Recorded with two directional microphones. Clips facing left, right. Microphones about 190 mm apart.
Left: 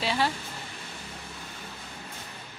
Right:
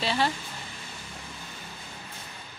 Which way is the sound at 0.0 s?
10° left (ahead or behind).